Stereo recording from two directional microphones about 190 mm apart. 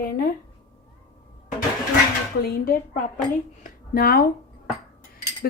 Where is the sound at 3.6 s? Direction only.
50° left (ahead or behind).